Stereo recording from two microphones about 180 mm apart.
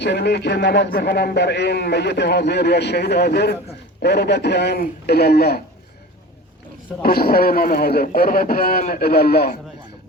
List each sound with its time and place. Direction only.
0.0 s a man's voice: 70° left (ahead or behind)
7.0 s a man's voice: 55° left (ahead or behind)